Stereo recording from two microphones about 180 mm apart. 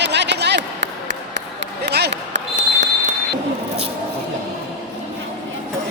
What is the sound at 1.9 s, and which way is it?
Basketball bounce, 75° right (ahead or behind).